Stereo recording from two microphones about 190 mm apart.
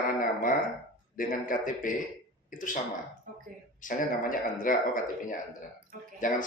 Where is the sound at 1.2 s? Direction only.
45° left (ahead or behind).